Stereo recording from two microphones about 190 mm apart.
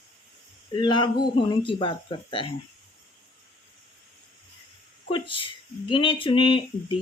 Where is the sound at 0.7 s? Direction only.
25° left (ahead or behind).